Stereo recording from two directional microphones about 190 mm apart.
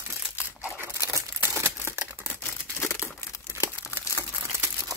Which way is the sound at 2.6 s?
5° right (ahead or behind).